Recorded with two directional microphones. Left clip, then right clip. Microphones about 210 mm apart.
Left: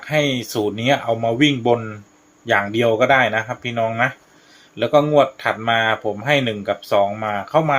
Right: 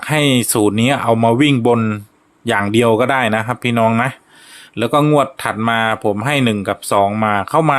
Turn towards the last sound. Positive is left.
turn(degrees=-50)  # may be behind; listen again after turning